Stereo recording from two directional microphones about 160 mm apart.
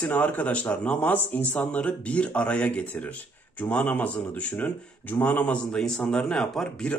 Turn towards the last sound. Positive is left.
turn(degrees=5)  # may be behind; listen again after turning